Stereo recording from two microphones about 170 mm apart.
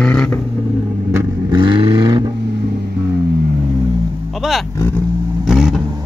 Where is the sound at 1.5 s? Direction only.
25° right (ahead or behind).